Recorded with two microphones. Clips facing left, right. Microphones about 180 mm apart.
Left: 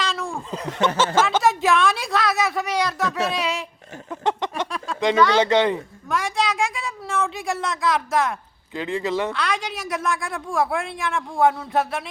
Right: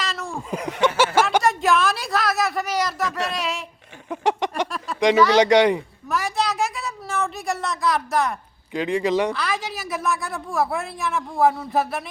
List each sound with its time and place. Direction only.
0.0 s chuckle: centre (ahead or behind)
0.5 s speech: 10° right (ahead or behind)
1.4 s a sound: centre (ahead or behind)
4.1 s a sound: 15° right (ahead or behind)
4.9 s speech: 15° right (ahead or behind)
6.1 s a woman's voice: centre (ahead or behind)
8.7 s speech: 15° right (ahead or behind)
9.3 s a woman's voice: centre (ahead or behind)